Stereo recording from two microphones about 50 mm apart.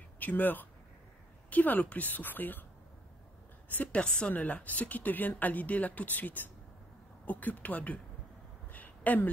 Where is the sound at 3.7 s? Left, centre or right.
Left.